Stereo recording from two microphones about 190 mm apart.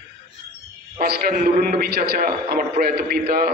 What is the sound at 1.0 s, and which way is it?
A man's voice, 50° right (ahead or behind).